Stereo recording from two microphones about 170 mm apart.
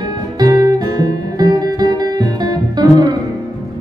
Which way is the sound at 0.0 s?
20° right (ahead or behind).